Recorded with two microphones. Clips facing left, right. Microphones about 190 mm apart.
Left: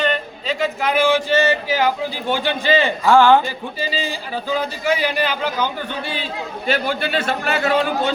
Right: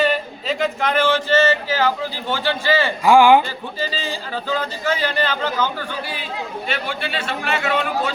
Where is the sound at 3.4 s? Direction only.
10° left (ahead or behind); by 8.1 s 35° left (ahead or behind).